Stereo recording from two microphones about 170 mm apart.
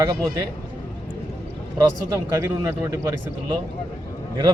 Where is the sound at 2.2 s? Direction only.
15° right (ahead or behind).